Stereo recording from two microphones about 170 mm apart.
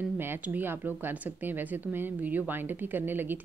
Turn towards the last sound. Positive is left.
turn(degrees=-10)  # may be behind; listen again after turning